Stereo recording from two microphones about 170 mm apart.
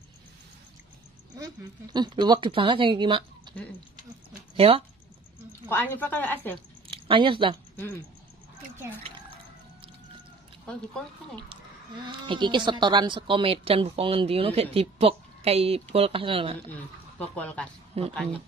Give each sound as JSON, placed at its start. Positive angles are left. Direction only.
{"t": 1.4, "sound": "a woman's voice", "side_deg": -25}
{"t": 3.5, "sound": "a sound", "side_deg": -25}
{"t": 4.6, "sound": "speech", "side_deg": -35}
{"t": 5.7, "sound": "a woman's voice", "side_deg": 10}
{"t": 6.9, "sound": "speech", "side_deg": -30}
{"t": 12.1, "sound": "speech", "side_deg": -25}
{"t": 17.4, "sound": "a woman's voice", "side_deg": 5}
{"t": 17.9, "sound": "speech", "side_deg": -35}